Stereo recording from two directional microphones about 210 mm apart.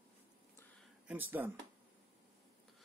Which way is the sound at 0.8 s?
5° right (ahead or behind).